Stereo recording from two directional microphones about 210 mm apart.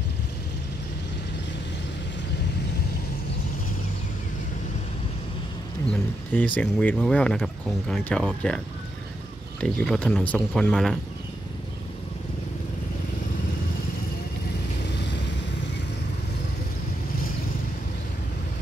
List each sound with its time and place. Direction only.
6.3 s speech: 5° left (ahead or behind)
15.0 s vehicle: 55° left (ahead or behind)